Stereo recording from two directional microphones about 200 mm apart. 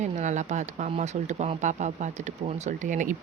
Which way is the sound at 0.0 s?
35° right (ahead or behind).